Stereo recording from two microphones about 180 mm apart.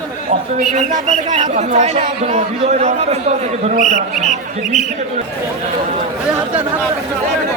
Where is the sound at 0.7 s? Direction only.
40° right (ahead or behind).